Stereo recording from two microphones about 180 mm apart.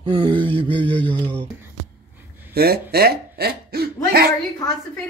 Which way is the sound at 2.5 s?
60° right (ahead or behind).